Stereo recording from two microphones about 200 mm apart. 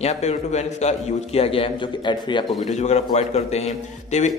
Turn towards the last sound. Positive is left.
turn(degrees=35)  # may be behind; listen again after turning